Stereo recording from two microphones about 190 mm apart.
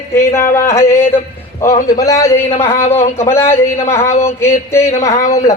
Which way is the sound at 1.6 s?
15° left (ahead or behind).